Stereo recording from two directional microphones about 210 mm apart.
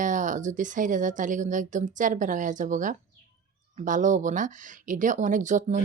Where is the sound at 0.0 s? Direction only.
35° right (ahead or behind).